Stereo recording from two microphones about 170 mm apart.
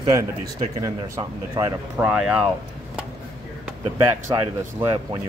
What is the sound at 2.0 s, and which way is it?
Speech, 5° right (ahead or behind).